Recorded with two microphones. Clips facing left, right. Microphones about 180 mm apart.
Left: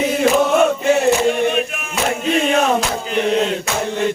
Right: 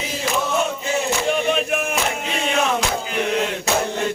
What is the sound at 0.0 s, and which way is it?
Chant, 60° left (ahead or behind).